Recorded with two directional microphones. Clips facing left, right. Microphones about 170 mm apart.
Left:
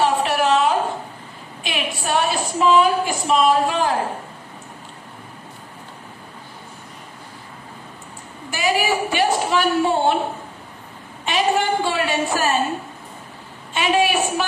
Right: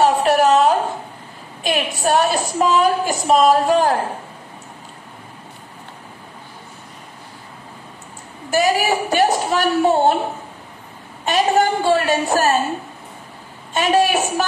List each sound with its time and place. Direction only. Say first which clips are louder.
0.0 s a sound: right 4 dB; 40° right (ahead or behind)
1.6 s a woman's voice: right 6 dB; 40° right (ahead or behind)
8.5 s a woman's voice: right 4 dB; 40° right (ahead or behind)
11.2 s a woman's voice: right 3 dB; 40° right (ahead or behind)
13.7 s a woman's voice: right 2 dB; 40° right (ahead or behind)